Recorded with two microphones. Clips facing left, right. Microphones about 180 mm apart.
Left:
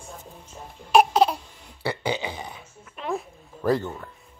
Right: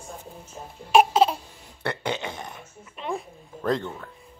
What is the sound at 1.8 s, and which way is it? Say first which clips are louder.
Burping: left 2 dB; 5° left (ahead or behind).